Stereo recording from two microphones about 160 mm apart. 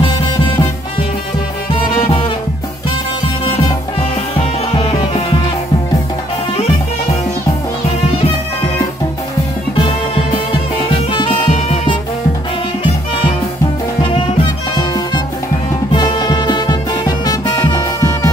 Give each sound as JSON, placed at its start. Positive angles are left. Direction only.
{"t": 2.0, "sound": "music", "side_deg": 30}
{"t": 11.1, "sound": "music", "side_deg": 30}
{"t": 11.4, "sound": "music", "side_deg": 45}
{"t": 15.9, "sound": "music", "side_deg": 30}